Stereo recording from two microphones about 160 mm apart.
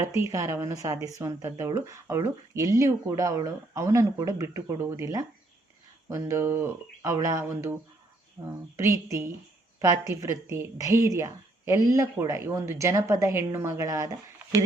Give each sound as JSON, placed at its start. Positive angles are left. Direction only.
{"t": 0.0, "sound": "a woman's voice", "side_deg": -20}